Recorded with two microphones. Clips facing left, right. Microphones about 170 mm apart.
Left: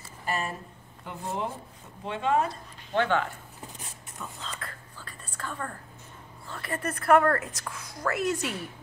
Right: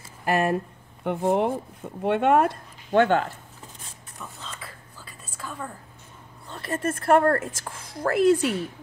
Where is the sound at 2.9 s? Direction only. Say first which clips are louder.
Right 6 dB; 45° right (ahead or behind).